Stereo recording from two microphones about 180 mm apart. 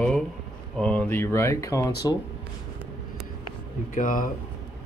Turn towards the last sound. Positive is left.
turn(degrees=50)  # may be behind; listen again after turning